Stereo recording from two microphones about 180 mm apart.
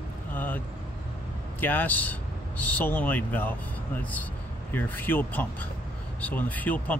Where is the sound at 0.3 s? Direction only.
10° left (ahead or behind).